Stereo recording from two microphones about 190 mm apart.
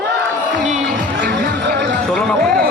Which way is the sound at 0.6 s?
40° right (ahead or behind).